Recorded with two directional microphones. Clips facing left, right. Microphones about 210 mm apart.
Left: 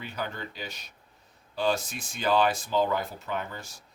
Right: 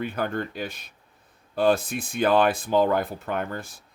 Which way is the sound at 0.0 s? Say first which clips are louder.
Right 8 dB; 50° right (ahead or behind).